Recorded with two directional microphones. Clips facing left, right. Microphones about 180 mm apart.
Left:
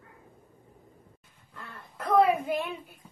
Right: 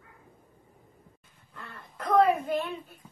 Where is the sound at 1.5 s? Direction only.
Centre (ahead or behind).